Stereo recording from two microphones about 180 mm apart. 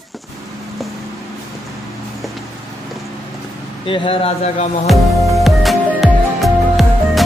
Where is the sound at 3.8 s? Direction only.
30° left (ahead or behind).